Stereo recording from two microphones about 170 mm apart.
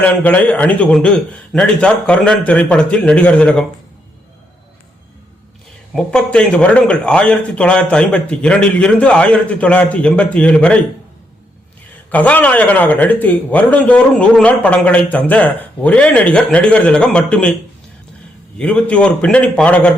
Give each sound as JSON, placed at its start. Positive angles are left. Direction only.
{"t": 0.0, "sound": "a man's voice", "side_deg": 10}
{"t": 5.9, "sound": "a man's voice", "side_deg": 5}
{"t": 12.1, "sound": "a man's voice", "side_deg": 10}
{"t": 18.6, "sound": "a man's voice", "side_deg": 5}